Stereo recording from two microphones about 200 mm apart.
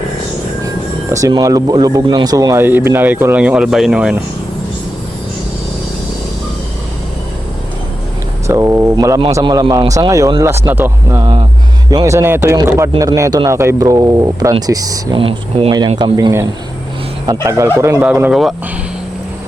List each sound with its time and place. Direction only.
1.1 s speech: 15° right (ahead or behind)
8.4 s speech: 15° right (ahead or behind)
17.7 s speech: 15° right (ahead or behind)
18.0 s speech: 5° right (ahead or behind)